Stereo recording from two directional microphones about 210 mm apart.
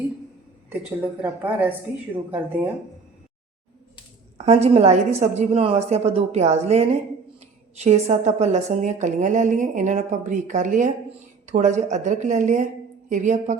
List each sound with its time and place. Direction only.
0.7 s a woman's voice: 10° right (ahead or behind)
4.4 s a woman's voice: 30° right (ahead or behind)